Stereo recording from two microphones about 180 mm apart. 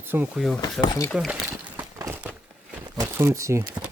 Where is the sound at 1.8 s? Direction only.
15° right (ahead or behind).